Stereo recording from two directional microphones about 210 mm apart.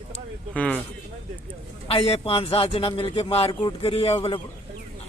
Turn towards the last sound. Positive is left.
turn(degrees=25)  # may be behind; listen again after turning